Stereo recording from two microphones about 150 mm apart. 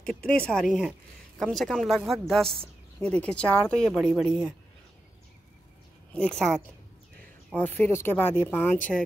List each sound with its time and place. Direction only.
0.2 s speech: 5° left (ahead or behind)
2.5 s a sound: 40° right (ahead or behind)
3.1 s speech: 10° left (ahead or behind)
6.1 s speech: 5° left (ahead or behind)